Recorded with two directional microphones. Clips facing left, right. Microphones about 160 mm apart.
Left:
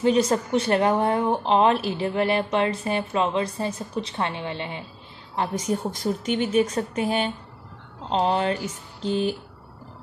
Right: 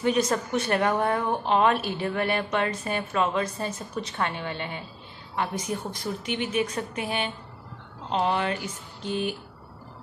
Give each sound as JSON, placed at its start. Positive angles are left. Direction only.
{"t": 0.0, "sound": "a woman's voice", "side_deg": 30}
{"t": 5.5, "sound": "a woman's voice", "side_deg": 40}